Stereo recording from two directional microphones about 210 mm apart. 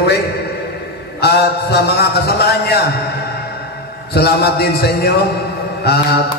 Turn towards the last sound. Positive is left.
turn(degrees=50)  # may be behind; listen again after turning